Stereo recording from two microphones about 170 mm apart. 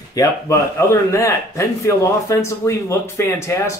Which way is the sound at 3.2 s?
15° left (ahead or behind).